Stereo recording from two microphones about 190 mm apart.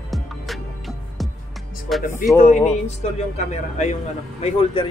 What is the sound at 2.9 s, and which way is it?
Speech, 35° left (ahead or behind).